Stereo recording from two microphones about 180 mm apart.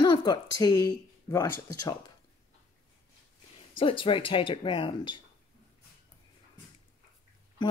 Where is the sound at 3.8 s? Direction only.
30° left (ahead or behind).